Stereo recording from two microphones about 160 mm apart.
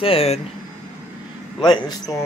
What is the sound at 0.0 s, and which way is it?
Speech, 35° left (ahead or behind).